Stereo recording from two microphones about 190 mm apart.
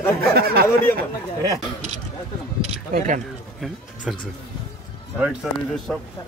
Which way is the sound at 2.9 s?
45° right (ahead or behind).